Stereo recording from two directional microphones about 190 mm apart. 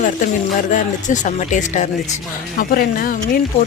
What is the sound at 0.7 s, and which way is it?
A man's voice, 40° left (ahead or behind).